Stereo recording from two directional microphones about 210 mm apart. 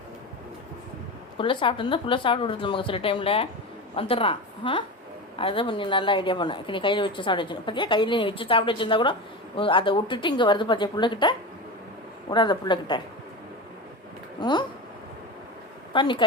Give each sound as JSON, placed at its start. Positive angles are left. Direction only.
{"t": 1.4, "sound": "a woman's voice", "side_deg": 25}
{"t": 14.4, "sound": "a woman's voice", "side_deg": 20}
{"t": 15.9, "sound": "a woman's voice", "side_deg": 25}